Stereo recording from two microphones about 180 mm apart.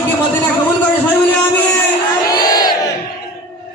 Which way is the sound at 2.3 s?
20° left (ahead or behind).